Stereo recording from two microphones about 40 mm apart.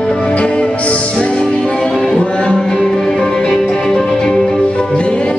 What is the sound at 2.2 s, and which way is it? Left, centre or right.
Music, left.